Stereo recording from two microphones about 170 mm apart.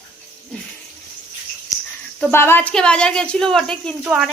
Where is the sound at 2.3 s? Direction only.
15° left (ahead or behind).